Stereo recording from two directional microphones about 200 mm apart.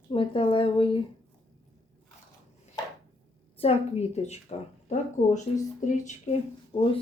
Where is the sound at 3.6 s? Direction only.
30° left (ahead or behind).